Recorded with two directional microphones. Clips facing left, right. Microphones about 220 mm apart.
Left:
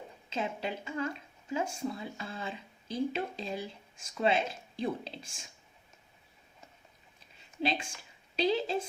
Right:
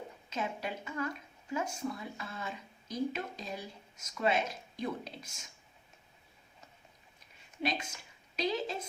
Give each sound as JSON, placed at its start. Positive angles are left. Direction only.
{"t": 0.3, "sound": "speech", "side_deg": 30}
{"t": 7.6, "sound": "speech", "side_deg": 30}